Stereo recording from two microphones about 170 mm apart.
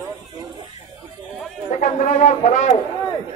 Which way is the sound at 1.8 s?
45° left (ahead or behind).